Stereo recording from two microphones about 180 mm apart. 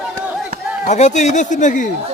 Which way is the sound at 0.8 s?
40° left (ahead or behind).